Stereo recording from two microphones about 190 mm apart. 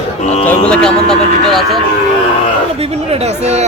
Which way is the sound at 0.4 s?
5° left (ahead or behind).